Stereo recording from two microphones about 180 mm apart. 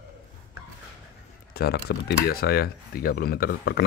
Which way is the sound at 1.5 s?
60° left (ahead or behind).